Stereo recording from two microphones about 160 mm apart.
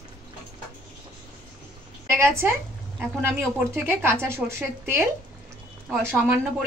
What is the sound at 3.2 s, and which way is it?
A woman's voice, 15° right (ahead or behind).